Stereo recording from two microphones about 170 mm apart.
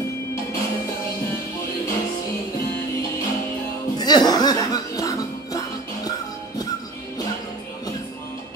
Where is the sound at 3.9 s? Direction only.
25° left (ahead or behind).